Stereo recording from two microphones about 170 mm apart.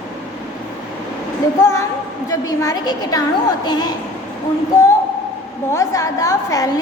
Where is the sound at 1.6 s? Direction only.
20° left (ahead or behind).